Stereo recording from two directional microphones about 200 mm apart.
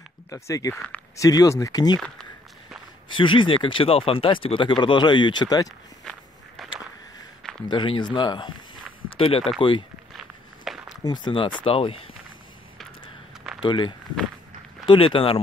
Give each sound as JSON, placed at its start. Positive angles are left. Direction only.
{"t": 0.3, "sound": "speech", "side_deg": 15}
{"t": 2.0, "sound": "speech", "side_deg": 5}
{"t": 3.1, "sound": "speech", "side_deg": 25}
{"t": 6.0, "sound": "walk", "side_deg": 0}
{"t": 7.6, "sound": "speech", "side_deg": 25}
{"t": 10.7, "sound": "a sound", "side_deg": 0}
{"t": 11.1, "sound": "speech", "side_deg": 25}
{"t": 13.6, "sound": "speech", "side_deg": 25}